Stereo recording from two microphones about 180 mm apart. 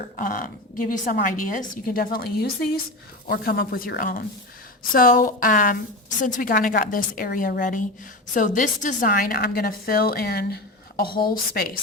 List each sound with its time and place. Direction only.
0.2 s a woman's voice: 50° left (ahead or behind)